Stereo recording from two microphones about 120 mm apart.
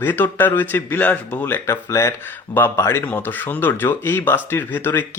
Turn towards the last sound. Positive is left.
turn(degrees=15)  # may be behind; listen again after turning